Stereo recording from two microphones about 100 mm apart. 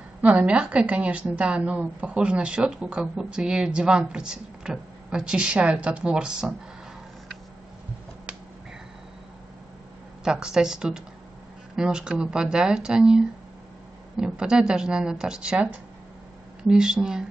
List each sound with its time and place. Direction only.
0.2 s a woman's voice: 15° right (ahead or behind)
10.2 s a woman's voice: 5° right (ahead or behind)